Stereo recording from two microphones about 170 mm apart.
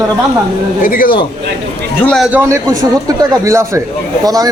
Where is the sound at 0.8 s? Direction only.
55° left (ahead or behind).